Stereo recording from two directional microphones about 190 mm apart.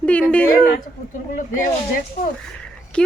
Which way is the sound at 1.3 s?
45° left (ahead or behind).